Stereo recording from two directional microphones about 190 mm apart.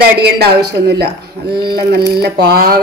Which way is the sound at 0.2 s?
60° right (ahead or behind).